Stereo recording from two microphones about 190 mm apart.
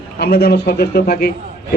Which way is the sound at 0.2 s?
55° left (ahead or behind).